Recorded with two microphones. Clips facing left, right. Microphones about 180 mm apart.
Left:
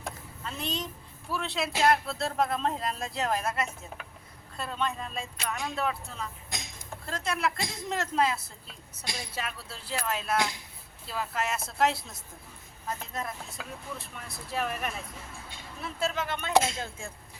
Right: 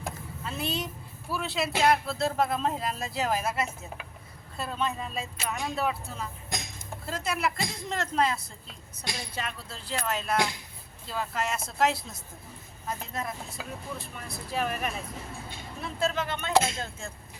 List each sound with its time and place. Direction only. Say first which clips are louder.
0.0 s vehicle: right 2 dB; 5° right (ahead or behind)
1.3 s speech: right 2 dB; 5° right (ahead or behind); by 17.1 s 15° left (ahead or behind)